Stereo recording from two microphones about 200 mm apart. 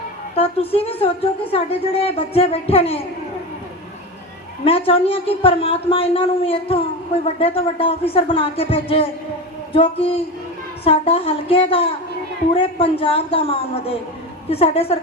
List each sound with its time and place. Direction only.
0.3 s speech: 30° left (ahead or behind)
4.6 s speech: 30° left (ahead or behind)